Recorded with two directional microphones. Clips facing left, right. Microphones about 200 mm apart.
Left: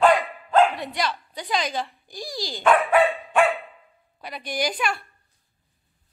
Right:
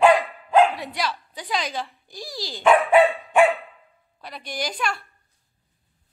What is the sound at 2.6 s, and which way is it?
Speech, 15° right (ahead or behind).